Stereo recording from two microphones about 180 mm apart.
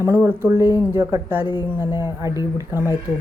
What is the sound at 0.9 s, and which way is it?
Speech, 15° right (ahead or behind).